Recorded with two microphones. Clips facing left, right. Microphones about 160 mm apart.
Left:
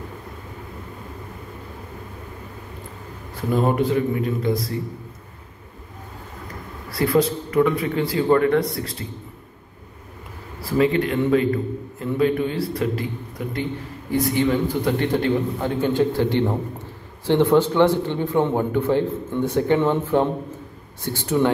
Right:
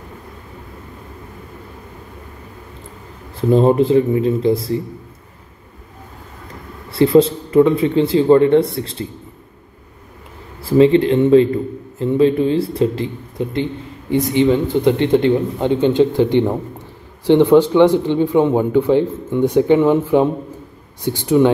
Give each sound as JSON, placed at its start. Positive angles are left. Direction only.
{"t": 3.3, "sound": "a man's voice", "side_deg": -25}
{"t": 6.9, "sound": "a man's voice", "side_deg": -25}
{"t": 10.7, "sound": "a man's voice", "side_deg": -25}